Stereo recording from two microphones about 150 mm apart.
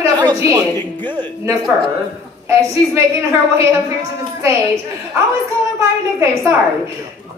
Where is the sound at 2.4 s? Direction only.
20° right (ahead or behind).